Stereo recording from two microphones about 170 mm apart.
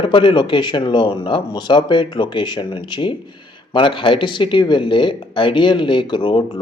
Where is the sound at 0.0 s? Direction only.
30° left (ahead or behind).